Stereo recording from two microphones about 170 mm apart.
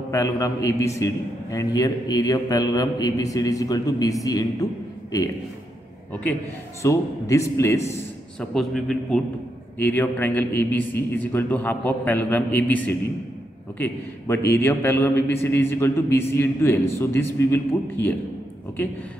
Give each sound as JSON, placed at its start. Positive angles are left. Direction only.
{"t": 0.1, "sound": "a man's voice", "side_deg": 20}
{"t": 6.8, "sound": "a man's voice", "side_deg": 20}
{"t": 8.4, "sound": "a man's voice", "side_deg": 0}